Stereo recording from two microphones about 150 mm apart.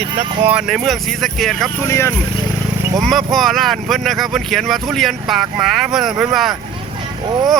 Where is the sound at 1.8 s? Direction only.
15° left (ahead or behind).